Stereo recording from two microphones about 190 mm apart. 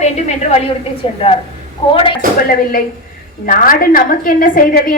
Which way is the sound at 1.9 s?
25° left (ahead or behind).